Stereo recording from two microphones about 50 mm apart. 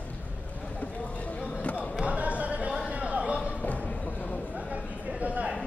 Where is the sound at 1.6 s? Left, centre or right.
Left.